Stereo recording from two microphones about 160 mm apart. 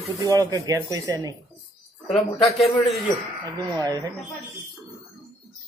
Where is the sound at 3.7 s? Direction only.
20° right (ahead or behind).